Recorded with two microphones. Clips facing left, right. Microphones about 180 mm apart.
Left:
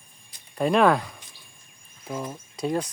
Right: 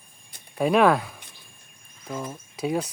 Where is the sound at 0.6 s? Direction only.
5° right (ahead or behind).